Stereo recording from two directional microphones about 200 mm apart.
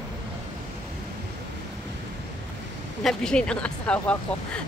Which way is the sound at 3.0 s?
5° left (ahead or behind).